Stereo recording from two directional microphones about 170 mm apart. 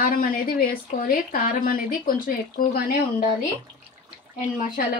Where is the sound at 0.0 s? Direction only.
55° left (ahead or behind).